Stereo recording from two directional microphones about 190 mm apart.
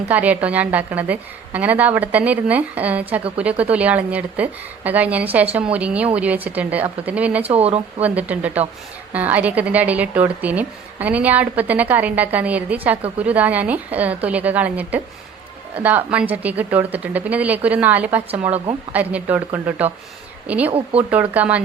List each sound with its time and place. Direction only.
0.1 s a woman's voice: 10° right (ahead or behind)
7.4 s speech: 30° right (ahead or behind)
8.0 s a woman's voice: 10° right (ahead or behind)
20.7 s speech: 30° right (ahead or behind)
21.1 s a woman's voice: 10° right (ahead or behind)